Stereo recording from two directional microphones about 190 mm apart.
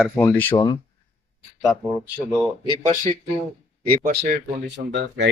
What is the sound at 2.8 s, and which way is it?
Speech, 35° right (ahead or behind).